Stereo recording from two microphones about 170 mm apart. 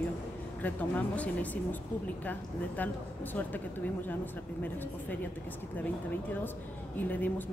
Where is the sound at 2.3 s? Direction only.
10° left (ahead or behind).